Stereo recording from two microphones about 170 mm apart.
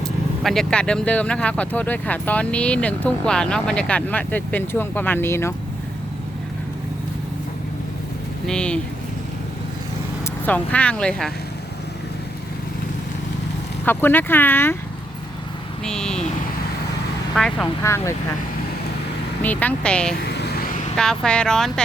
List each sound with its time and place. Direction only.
0.4 s speech: 5° left (ahead or behind)
8.4 s speech: 5° left (ahead or behind)
10.4 s speech: 10° left (ahead or behind)
13.8 s speech: 10° left (ahead or behind)
15.8 s speech: 5° left (ahead or behind)
17.3 s speech: centre (ahead or behind)
17.8 s speech: 15° left (ahead or behind)
19.4 s speech: 10° left (ahead or behind)
20.2 s vehicle: 75° left (ahead or behind)
20.9 s speech: 5° left (ahead or behind)